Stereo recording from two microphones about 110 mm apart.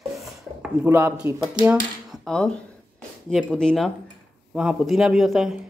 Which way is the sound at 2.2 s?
5° left (ahead or behind).